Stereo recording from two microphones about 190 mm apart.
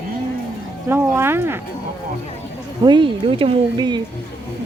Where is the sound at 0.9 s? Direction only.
10° right (ahead or behind).